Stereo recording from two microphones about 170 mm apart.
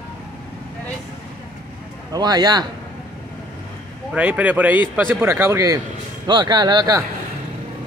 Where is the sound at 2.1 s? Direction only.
25° right (ahead or behind).